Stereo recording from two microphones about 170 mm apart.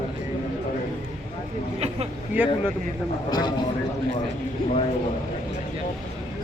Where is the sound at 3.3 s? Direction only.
25° left (ahead or behind).